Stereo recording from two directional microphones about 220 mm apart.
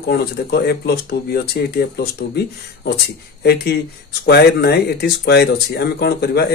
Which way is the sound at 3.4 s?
50° left (ahead or behind).